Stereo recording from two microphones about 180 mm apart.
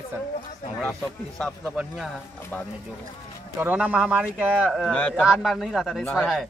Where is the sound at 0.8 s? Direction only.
5° left (ahead or behind).